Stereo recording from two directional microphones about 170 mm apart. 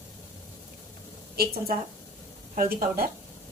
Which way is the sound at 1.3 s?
60° right (ahead or behind).